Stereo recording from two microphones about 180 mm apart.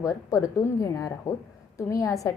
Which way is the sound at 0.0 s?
15° left (ahead or behind).